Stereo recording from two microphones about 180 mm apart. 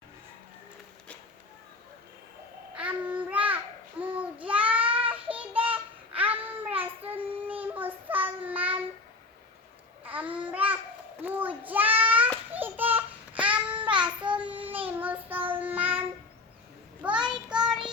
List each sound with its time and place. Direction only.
2.7 s babbling: 5° right (ahead or behind)
4.0 s child singing: 10° right (ahead or behind)
10.0 s babbling: 10° right (ahead or behind)
11.2 s a sound: 10° right (ahead or behind)
12.5 s babbling: 10° right (ahead or behind)
13.7 s child singing: 25° right (ahead or behind)
14.3 s child singing: 10° right (ahead or behind)